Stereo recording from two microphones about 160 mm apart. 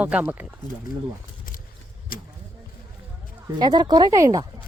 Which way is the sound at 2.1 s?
65° left (ahead or behind).